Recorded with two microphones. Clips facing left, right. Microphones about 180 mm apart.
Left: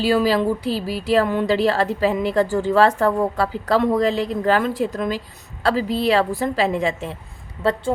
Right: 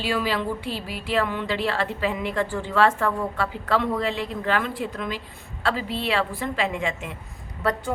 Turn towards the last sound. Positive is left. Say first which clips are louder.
# left 5 dB
turn(degrees=25)  # may be behind; listen again after turning